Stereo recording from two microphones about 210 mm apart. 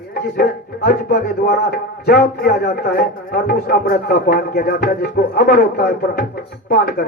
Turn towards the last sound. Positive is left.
turn(degrees=45)  # may be behind; listen again after turning